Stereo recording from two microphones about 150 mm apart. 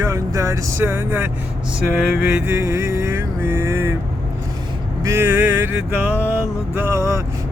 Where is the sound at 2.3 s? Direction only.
15° right (ahead or behind).